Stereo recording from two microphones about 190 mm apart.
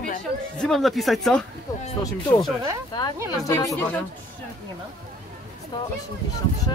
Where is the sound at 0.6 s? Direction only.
Centre (ahead or behind).